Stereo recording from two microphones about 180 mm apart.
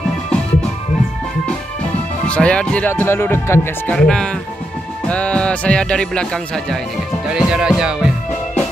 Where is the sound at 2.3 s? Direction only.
5° left (ahead or behind).